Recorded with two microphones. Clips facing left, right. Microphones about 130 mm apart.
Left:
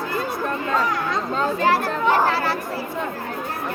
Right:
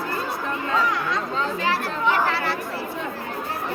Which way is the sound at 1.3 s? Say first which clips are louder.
Left 7 dB; 45° left (ahead or behind).